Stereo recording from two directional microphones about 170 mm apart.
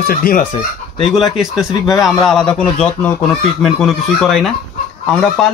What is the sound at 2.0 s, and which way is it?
Speech, centre (ahead or behind).